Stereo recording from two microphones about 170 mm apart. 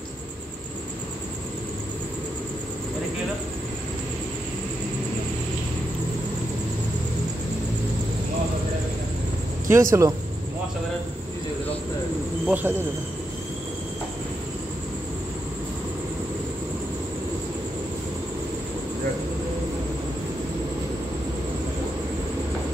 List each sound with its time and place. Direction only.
9.7 s speech: 15° right (ahead or behind)
12.4 s speech: 10° right (ahead or behind)